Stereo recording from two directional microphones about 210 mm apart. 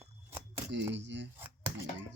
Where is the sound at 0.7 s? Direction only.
55° right (ahead or behind).